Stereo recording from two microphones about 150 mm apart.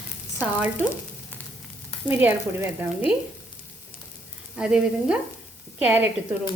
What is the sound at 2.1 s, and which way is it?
A woman's voice, 15° right (ahead or behind).